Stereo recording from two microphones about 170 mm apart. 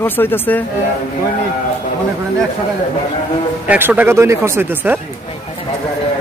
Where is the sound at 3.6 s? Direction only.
10° right (ahead or behind).